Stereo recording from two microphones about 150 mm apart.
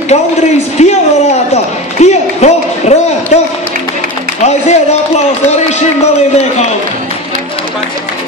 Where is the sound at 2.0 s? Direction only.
50° left (ahead or behind).